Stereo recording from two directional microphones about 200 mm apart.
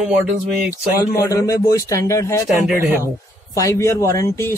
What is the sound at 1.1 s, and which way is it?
Speech, 15° left (ahead or behind).